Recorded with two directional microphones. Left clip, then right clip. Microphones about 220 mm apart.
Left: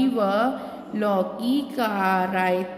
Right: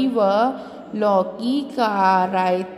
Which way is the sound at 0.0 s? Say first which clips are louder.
Right 4 dB; 15° right (ahead or behind).